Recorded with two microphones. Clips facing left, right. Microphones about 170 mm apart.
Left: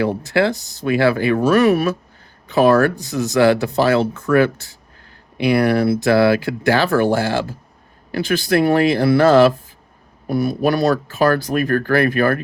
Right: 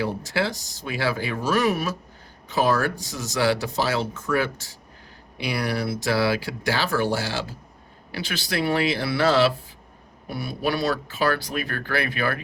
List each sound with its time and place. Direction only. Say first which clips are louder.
0.0 s speech: left 8 dB; 60° left (ahead or behind)